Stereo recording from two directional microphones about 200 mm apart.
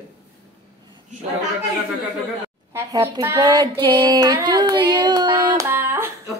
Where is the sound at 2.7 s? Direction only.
15° right (ahead or behind).